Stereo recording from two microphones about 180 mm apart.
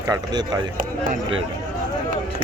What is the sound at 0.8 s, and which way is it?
Speech, 45° right (ahead or behind).